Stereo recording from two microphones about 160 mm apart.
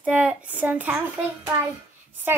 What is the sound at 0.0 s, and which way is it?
Speech, 10° right (ahead or behind).